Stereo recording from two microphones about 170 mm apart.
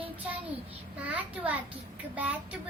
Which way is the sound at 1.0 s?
10° right (ahead or behind).